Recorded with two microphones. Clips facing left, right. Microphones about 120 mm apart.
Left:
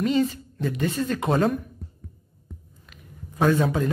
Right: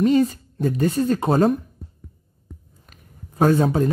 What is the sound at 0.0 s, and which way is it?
A woman's voice, 40° right (ahead or behind).